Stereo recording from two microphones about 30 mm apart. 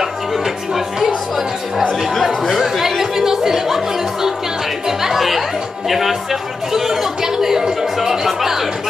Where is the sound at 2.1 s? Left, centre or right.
Centre.